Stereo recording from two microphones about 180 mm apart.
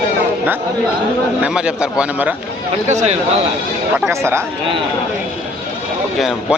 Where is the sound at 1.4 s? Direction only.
5° right (ahead or behind).